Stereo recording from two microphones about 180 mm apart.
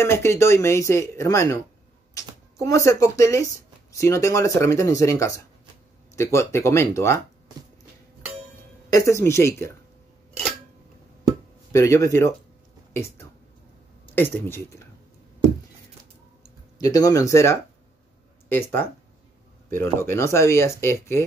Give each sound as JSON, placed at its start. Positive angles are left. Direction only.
{"t": 0.0, "sound": "speech", "side_deg": 15}
{"t": 8.9, "sound": "speech", "side_deg": 15}
{"t": 11.7, "sound": "speech", "side_deg": 20}
{"t": 14.1, "sound": "speech", "side_deg": 10}
{"t": 16.7, "sound": "speech", "side_deg": 20}